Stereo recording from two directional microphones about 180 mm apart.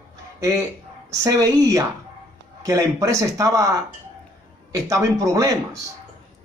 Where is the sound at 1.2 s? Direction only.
20° right (ahead or behind).